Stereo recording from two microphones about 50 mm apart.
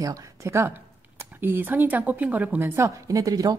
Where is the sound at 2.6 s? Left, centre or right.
Right.